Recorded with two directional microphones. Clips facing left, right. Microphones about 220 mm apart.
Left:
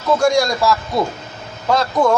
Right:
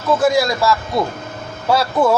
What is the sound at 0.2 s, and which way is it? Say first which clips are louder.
Speech: even; 5° right (ahead or behind).